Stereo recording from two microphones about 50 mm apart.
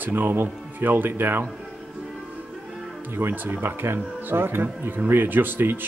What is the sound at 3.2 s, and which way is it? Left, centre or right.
Speech, right.